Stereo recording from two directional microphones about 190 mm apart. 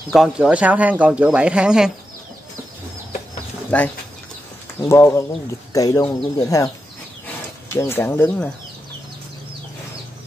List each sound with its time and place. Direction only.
0.1 s speech: centre (ahead or behind)
3.7 s speech: 5° left (ahead or behind)
7.7 s speech: 10° left (ahead or behind)